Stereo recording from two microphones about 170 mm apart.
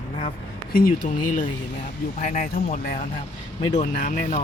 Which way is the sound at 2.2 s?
55° left (ahead or behind).